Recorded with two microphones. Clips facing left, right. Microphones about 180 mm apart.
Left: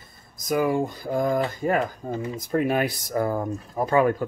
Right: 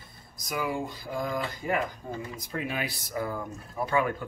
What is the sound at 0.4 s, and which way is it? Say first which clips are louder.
Speech: left 9 dB; 50° left (ahead or behind).